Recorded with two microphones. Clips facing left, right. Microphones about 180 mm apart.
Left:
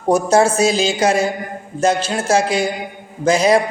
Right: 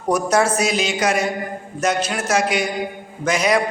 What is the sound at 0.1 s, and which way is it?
A man's voice, 25° left (ahead or behind).